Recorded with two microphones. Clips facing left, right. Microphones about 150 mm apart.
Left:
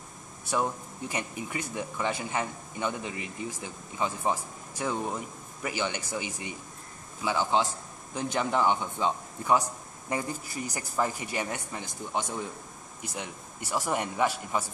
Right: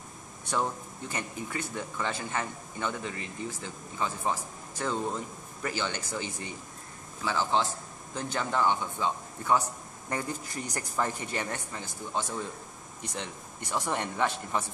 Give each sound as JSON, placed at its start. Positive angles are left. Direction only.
{"t": 0.5, "sound": "speech", "side_deg": 10}